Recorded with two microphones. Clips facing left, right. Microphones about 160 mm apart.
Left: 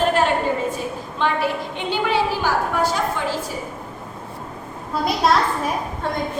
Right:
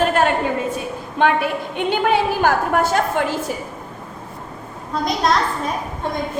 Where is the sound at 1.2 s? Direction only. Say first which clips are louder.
Right 4 dB; 55° right (ahead or behind).